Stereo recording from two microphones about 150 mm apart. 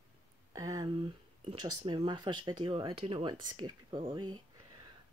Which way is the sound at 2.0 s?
30° right (ahead or behind).